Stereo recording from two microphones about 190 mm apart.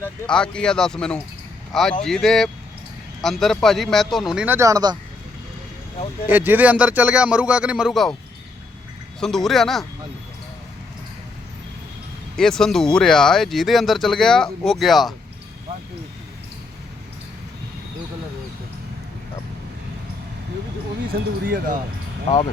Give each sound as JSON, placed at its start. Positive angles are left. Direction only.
{"t": 0.0, "sound": "speech", "side_deg": 5}
{"t": 6.2, "sound": "speech", "side_deg": -10}
{"t": 9.2, "sound": "speech", "side_deg": 0}
{"t": 12.4, "sound": "speech", "side_deg": 0}
{"t": 21.4, "sound": "speech", "side_deg": -50}
{"t": 22.3, "sound": "speech", "side_deg": 30}